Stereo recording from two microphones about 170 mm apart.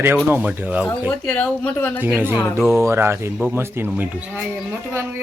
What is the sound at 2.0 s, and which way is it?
A woman's voice, 10° right (ahead or behind).